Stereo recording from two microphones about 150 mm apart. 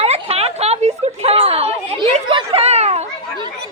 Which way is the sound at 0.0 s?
45° right (ahead or behind).